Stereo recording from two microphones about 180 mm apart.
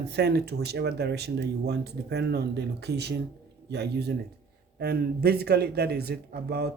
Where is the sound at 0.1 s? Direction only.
65° right (ahead or behind).